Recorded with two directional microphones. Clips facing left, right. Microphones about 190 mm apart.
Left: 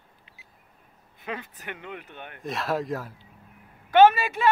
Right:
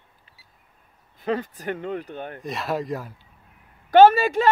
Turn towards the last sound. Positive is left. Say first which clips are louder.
# right 4 dB
turn(degrees=-40)  # may be behind; listen again after turning